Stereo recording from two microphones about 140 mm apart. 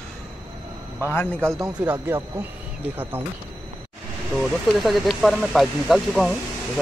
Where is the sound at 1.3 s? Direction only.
20° right (ahead or behind).